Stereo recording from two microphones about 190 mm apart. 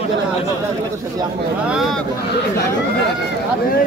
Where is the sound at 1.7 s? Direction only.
Centre (ahead or behind).